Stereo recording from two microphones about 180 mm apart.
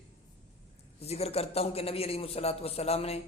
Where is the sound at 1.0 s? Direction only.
35° left (ahead or behind).